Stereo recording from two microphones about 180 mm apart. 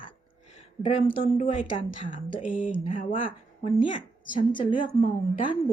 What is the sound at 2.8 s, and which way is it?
Speech, 45° left (ahead or behind).